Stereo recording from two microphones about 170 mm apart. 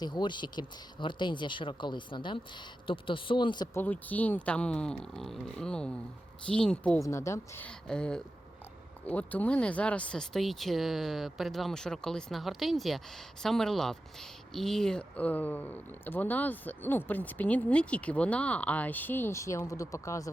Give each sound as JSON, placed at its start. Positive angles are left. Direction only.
{"t": 0.0, "sound": "speech", "side_deg": 25}
{"t": 3.8, "sound": "speech", "side_deg": 10}
{"t": 7.0, "sound": "speech", "side_deg": 15}